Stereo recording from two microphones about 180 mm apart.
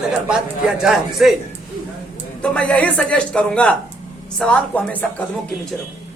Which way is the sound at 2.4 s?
5° left (ahead or behind).